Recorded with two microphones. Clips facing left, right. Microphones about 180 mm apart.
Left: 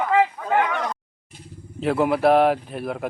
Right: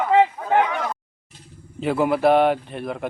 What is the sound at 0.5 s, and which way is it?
Speech, 5° right (ahead or behind).